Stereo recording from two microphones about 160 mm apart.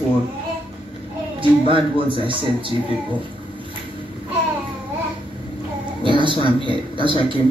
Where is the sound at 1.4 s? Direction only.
35° right (ahead or behind).